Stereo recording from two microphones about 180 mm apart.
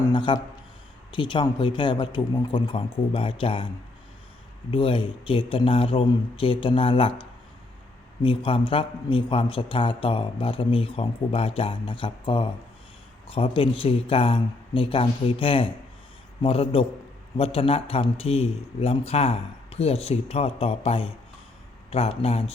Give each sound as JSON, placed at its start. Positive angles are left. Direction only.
{"t": 0.0, "sound": "a sound", "side_deg": 25}
{"t": 1.1, "sound": "a man's voice", "side_deg": 25}
{"t": 4.7, "sound": "a man's voice", "side_deg": 30}